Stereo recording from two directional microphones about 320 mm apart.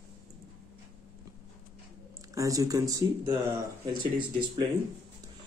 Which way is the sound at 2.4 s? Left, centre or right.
Centre.